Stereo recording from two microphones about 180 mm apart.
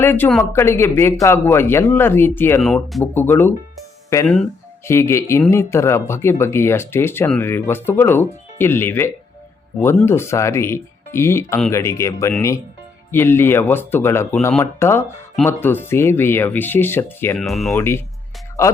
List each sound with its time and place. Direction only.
0.0 s speech: 10° left (ahead or behind)
2.6 s speech: centre (ahead or behind)
4.9 s speech: 15° left (ahead or behind)
17.4 s speech: centre (ahead or behind)
17.7 s speech: 15° left (ahead or behind)